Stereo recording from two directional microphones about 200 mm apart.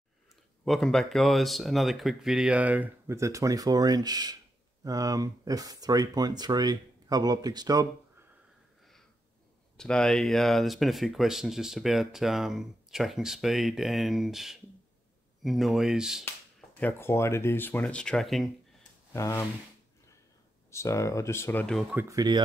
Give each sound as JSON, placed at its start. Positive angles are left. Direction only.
{"t": 0.7, "sound": "speech", "side_deg": 0}
{"t": 9.8, "sound": "speech", "side_deg": 5}
{"t": 16.8, "sound": "speech", "side_deg": 15}
{"t": 19.1, "sound": "speech", "side_deg": 15}
{"t": 20.7, "sound": "speech", "side_deg": 15}
{"t": 21.9, "sound": "speech", "side_deg": -15}